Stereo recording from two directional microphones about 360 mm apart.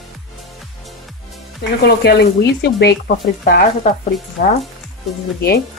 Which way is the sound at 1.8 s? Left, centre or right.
Left.